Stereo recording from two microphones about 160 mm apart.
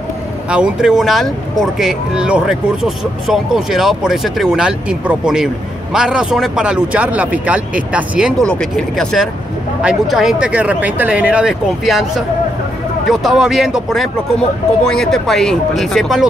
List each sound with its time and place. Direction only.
0.5 s speech: 5° right (ahead or behind)